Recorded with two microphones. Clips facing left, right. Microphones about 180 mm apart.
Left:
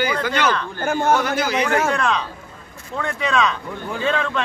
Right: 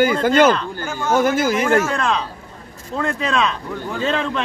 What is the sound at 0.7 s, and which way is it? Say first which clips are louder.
Speech: left 5 dB; 55° left (ahead or behind).